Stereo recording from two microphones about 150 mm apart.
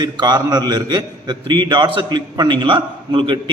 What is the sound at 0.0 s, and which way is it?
A man's voice, 30° right (ahead or behind).